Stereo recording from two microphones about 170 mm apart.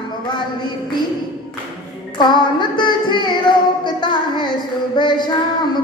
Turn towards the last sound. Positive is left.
turn(degrees=25)  # may be behind; listen again after turning